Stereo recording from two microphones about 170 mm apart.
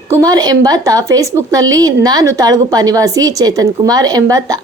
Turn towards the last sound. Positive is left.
turn(degrees=-20)  # may be behind; listen again after turning